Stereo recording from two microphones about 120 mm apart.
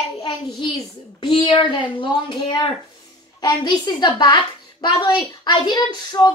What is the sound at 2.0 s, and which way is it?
Speech, 45° left (ahead or behind).